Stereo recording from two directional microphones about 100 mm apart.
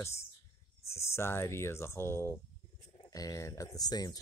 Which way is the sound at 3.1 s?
35° left (ahead or behind).